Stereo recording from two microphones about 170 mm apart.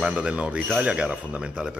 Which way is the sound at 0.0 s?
5° right (ahead or behind).